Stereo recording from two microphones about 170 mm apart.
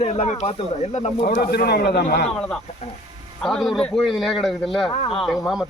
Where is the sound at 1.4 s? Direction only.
70° left (ahead or behind).